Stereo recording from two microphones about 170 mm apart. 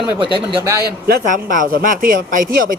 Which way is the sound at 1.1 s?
50° right (ahead or behind).